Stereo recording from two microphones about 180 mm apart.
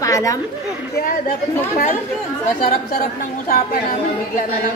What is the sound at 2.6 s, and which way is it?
A woman's voice, 50° left (ahead or behind).